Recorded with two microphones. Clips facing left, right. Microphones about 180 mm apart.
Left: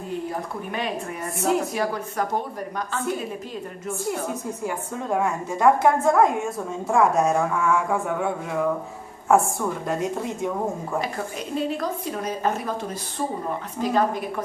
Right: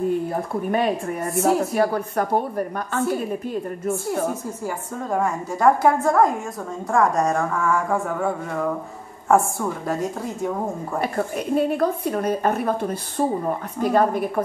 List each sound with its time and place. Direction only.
0.3 s a woman's voice: 50° right (ahead or behind)
4.6 s speech: centre (ahead or behind)
11.0 s a woman's voice: 55° right (ahead or behind)